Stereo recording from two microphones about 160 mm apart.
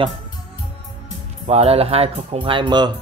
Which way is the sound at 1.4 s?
40° right (ahead or behind).